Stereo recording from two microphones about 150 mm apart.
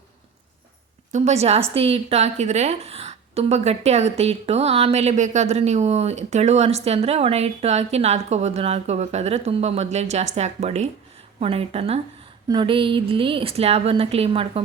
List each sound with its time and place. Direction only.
1.1 s a woman's voice: 50° right (ahead or behind)